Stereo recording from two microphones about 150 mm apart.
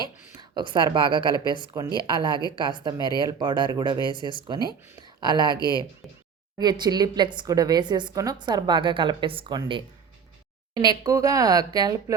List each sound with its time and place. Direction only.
0.3 s a woman's voice: 30° right (ahead or behind)
5.5 s speech: 25° left (ahead or behind)
6.6 s a woman's voice: 30° right (ahead or behind)